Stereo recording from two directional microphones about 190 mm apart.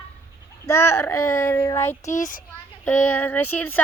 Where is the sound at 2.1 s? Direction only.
45° left (ahead or behind).